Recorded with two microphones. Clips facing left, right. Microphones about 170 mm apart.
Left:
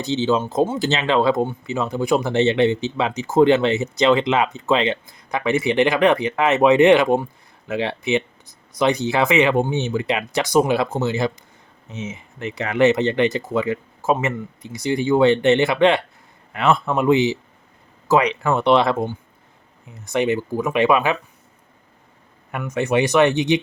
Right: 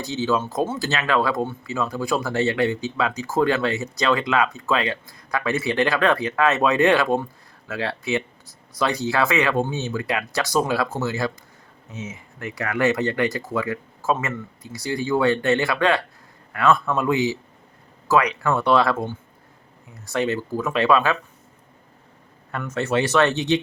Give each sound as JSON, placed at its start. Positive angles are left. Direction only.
{"t": 0.0, "sound": "speech", "side_deg": 20}
{"t": 22.5, "sound": "speech", "side_deg": 15}